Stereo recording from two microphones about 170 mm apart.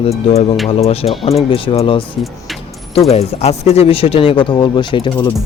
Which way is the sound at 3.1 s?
40° left (ahead or behind).